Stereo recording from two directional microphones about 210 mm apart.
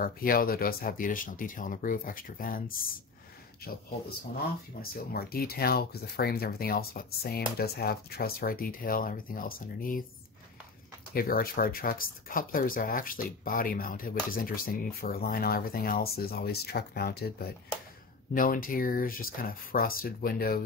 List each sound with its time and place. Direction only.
0.0 s speech: 45° left (ahead or behind)
4.8 s speech: 45° left (ahead or behind)
11.1 s speech: 45° left (ahead or behind)